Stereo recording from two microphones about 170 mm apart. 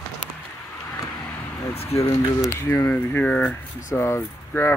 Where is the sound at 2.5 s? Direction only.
15° left (ahead or behind).